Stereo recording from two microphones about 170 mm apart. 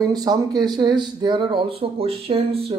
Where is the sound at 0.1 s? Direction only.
25° right (ahead or behind).